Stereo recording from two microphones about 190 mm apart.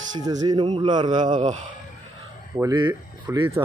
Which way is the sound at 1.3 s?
40° right (ahead or behind).